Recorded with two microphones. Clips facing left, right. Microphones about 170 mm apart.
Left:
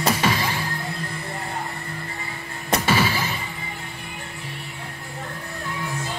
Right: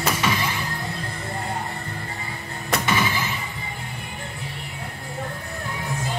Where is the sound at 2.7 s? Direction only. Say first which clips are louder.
Left 2 dB; 30° left (ahead or behind).